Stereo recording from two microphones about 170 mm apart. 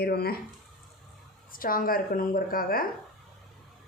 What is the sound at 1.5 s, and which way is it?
A woman's voice, 55° left (ahead or behind).